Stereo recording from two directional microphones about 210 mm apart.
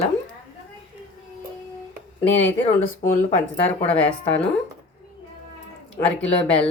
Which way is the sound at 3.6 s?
30° left (ahead or behind).